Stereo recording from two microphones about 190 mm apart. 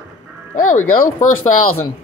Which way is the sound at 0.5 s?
45° left (ahead or behind).